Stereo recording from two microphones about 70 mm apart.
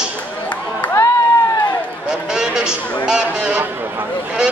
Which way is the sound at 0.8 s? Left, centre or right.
Left.